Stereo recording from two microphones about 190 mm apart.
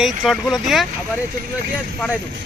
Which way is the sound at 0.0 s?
Centre (ahead or behind).